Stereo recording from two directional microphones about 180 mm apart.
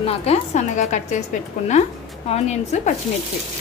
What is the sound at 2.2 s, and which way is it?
Speech, 35° left (ahead or behind).